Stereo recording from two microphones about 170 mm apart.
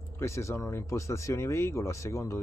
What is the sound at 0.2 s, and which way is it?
Speech, 15° left (ahead or behind).